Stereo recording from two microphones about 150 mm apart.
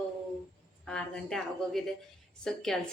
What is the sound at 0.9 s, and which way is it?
A woman's voice, 5° left (ahead or behind).